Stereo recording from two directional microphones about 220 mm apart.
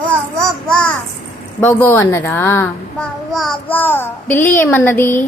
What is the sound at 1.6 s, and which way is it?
A child's voice, 10° left (ahead or behind).